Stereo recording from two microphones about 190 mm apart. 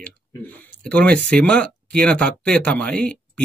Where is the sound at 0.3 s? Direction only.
10° left (ahead or behind).